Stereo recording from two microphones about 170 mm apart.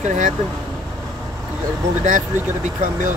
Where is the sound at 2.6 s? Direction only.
45° right (ahead or behind).